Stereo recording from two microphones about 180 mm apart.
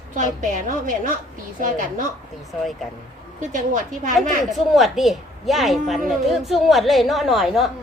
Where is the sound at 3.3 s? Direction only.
45° right (ahead or behind).